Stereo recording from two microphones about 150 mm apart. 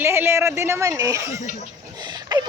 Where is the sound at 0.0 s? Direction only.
15° right (ahead or behind).